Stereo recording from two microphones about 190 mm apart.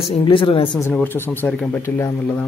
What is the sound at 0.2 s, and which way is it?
Speech, 25° left (ahead or behind).